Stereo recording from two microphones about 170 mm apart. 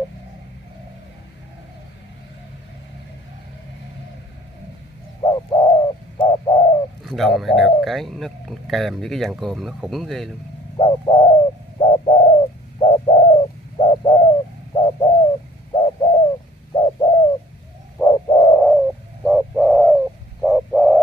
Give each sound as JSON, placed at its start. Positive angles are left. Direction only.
{"t": 5.2, "sound": "bird", "side_deg": 25}
{"t": 7.0, "sound": "speech", "side_deg": 0}
{"t": 10.8, "sound": "bird", "side_deg": 30}
{"t": 18.6, "sound": "bird", "side_deg": 0}